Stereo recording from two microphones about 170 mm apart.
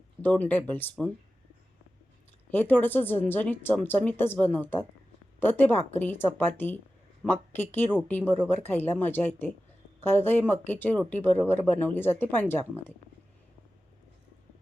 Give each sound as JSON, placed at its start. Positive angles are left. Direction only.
{"t": 0.2, "sound": "speech", "side_deg": 10}
{"t": 2.5, "sound": "speech", "side_deg": 10}